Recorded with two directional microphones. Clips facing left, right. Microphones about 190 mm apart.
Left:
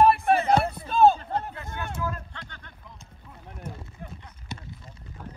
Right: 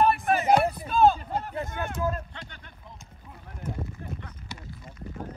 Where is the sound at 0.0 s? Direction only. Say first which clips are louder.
Left 3 dB; 30° left (ahead or behind).